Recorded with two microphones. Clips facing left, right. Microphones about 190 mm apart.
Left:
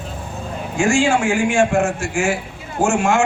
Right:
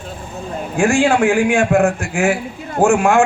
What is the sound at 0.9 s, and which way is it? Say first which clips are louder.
A man's voice: right 4 dB; 60° right (ahead or behind).